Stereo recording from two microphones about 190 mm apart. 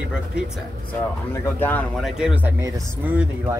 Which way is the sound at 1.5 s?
10° left (ahead or behind).